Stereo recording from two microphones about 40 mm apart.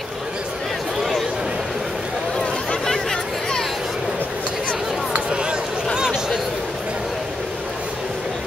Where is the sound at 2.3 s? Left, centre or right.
Centre.